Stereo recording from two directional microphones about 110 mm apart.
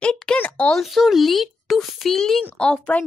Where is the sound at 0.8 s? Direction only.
Centre (ahead or behind).